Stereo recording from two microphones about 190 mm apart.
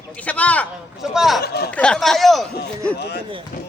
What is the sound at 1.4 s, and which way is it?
Speech, 55° left (ahead or behind).